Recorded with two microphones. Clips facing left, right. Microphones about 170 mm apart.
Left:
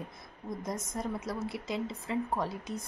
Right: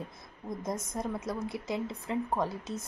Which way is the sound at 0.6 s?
Centre (ahead or behind).